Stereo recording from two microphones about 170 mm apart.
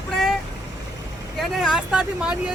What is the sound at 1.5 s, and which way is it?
Speech, 5° right (ahead or behind).